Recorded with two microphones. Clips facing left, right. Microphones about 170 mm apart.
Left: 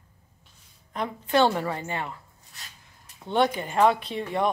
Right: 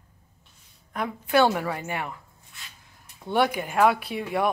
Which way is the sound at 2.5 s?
40° left (ahead or behind).